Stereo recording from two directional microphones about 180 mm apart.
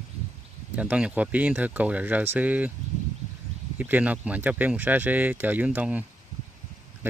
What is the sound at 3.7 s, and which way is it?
Speech, 10° right (ahead or behind).